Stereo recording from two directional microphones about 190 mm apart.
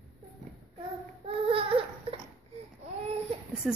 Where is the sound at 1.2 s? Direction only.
30° right (ahead or behind).